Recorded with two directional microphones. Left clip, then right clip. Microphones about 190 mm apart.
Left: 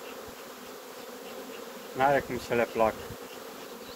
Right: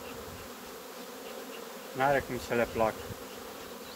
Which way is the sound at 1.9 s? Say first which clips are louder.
Left 3 dB; 10° left (ahead or behind).